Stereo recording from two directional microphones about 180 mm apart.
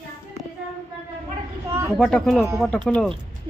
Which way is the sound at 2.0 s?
Centre (ahead or behind).